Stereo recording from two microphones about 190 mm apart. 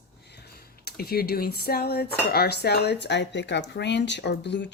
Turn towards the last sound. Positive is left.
turn(degrees=65)  # may be behind; listen again after turning